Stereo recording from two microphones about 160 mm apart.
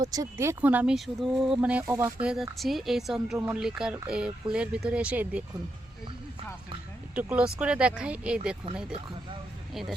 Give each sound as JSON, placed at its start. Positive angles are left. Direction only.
{"t": 0.0, "sound": "speech", "side_deg": -20}
{"t": 1.8, "sound": "speech", "side_deg": -15}
{"t": 2.2, "sound": "speech", "side_deg": -5}
{"t": 3.3, "sound": "speech", "side_deg": -15}
{"t": 3.6, "sound": "speech", "side_deg": -5}
{"t": 7.2, "sound": "speech", "side_deg": -10}